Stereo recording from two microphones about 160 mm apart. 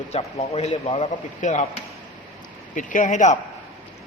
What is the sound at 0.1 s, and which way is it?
Speech, 40° left (ahead or behind).